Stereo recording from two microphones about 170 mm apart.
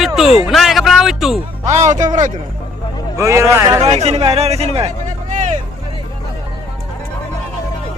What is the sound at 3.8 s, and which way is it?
Speech, 40° right (ahead or behind).